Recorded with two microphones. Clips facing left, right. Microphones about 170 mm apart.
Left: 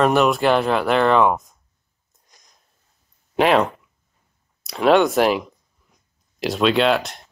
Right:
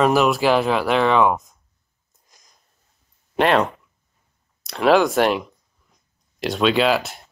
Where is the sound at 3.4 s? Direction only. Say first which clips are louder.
Left 1 dB; centre (ahead or behind).